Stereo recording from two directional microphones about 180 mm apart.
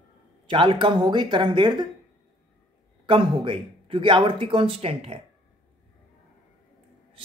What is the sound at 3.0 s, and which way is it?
A man's voice, 30° right (ahead or behind).